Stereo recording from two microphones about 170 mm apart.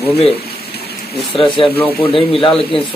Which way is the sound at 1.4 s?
30° left (ahead or behind).